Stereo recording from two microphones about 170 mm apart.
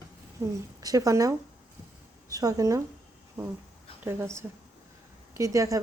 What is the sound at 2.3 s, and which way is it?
Speech, 20° right (ahead or behind).